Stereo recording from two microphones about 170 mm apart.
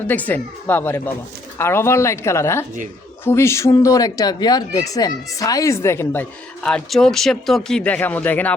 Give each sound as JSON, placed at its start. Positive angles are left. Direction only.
{"t": 0.1, "sound": "speech", "side_deg": 10}